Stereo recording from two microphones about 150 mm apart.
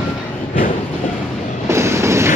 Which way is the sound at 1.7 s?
20° right (ahead or behind).